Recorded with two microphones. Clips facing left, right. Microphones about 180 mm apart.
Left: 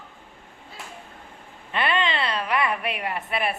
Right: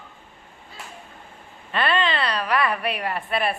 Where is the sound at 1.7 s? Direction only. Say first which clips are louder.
Right 2 dB; 20° left (ahead or behind).